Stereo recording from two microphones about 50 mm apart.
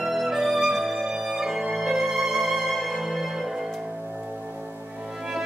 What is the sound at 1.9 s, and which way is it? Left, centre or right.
Violin, centre.